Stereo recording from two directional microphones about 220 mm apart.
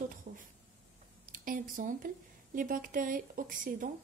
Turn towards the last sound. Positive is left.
turn(degrees=-40)  # may be behind; listen again after turning